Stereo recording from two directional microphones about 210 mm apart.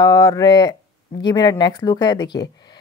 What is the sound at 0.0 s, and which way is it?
A woman's voice, 20° left (ahead or behind).